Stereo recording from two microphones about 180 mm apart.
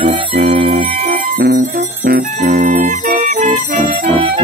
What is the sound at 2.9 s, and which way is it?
Jingle bell, 45° right (ahead or behind).